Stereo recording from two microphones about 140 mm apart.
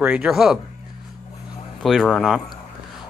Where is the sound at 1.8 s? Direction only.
Centre (ahead or behind).